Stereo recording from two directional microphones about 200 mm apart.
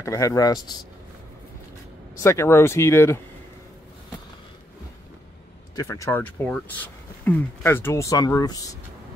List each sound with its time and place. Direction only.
0.0 s speech: 15° left (ahead or behind)
2.1 s speech: 15° left (ahead or behind)
5.8 s speech: 15° left (ahead or behind)